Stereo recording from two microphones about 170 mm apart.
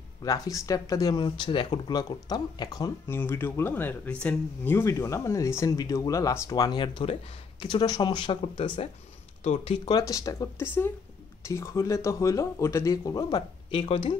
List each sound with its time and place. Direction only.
0.2 s speech: 20° left (ahead or behind); by 9.9 s 35° left (ahead or behind)
9.9 s speech: 20° left (ahead or behind)